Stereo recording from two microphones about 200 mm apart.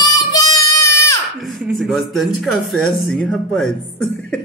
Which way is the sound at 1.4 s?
Centre (ahead or behind).